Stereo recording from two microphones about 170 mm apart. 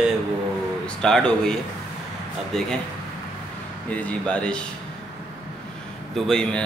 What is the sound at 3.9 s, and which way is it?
Speech, 10° left (ahead or behind).